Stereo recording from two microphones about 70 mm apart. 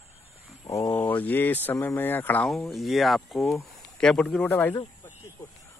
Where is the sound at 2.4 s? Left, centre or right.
Centre.